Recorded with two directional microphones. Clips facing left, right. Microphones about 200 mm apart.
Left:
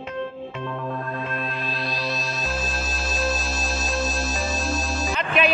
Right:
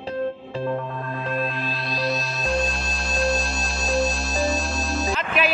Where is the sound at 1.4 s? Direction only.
Centre (ahead or behind).